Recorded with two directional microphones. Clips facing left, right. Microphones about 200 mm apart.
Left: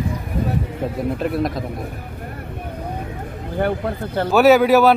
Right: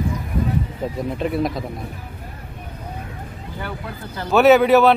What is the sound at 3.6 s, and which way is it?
Speech, 55° left (ahead or behind).